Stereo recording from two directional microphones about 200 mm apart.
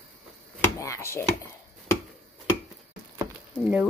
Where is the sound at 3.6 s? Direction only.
5° right (ahead or behind).